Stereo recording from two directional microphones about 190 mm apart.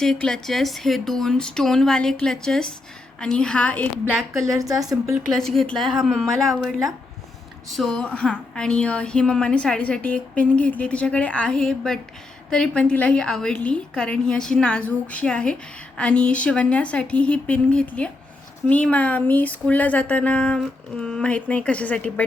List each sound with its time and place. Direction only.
0.0 s a woman's voice: 5° left (ahead or behind)
4.5 s a woman's voice: 20° right (ahead or behind)
5.3 s a woman's voice: centre (ahead or behind)